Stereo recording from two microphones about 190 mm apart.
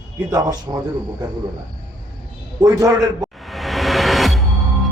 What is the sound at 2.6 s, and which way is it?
Speech, 15° right (ahead or behind).